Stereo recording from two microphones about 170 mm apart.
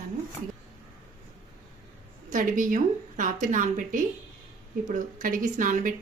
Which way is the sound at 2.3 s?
50° right (ahead or behind).